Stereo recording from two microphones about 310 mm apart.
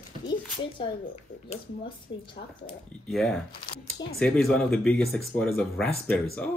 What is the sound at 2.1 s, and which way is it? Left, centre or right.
Speech, centre.